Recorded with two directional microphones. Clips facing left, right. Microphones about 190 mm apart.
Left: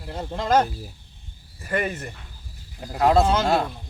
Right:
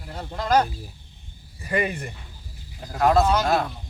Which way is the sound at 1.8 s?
10° right (ahead or behind).